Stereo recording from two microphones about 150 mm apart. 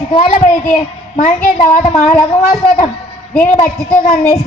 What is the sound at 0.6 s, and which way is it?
A child's voice, 55° left (ahead or behind).